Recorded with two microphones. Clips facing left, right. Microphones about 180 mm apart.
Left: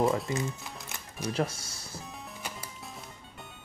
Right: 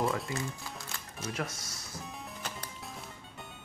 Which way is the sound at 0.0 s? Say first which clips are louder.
Left 5 dB; 20° left (ahead or behind).